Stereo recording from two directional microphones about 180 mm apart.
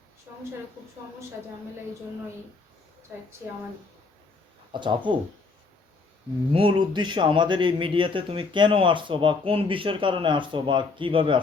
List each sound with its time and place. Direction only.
4.7 s a man's voice: 25° right (ahead or behind)
6.5 s a man's voice: 30° right (ahead or behind)